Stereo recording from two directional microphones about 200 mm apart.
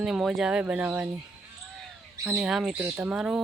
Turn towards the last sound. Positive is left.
turn(degrees=-5)  # may be behind; listen again after turning